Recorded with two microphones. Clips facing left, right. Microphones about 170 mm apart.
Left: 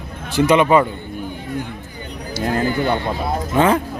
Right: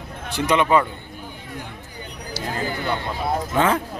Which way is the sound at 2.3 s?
55° left (ahead or behind).